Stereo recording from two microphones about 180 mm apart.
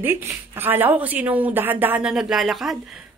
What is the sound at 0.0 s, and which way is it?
Speech, 15° right (ahead or behind).